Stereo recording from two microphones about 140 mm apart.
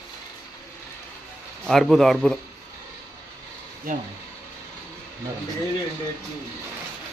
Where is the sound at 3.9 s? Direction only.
90° right.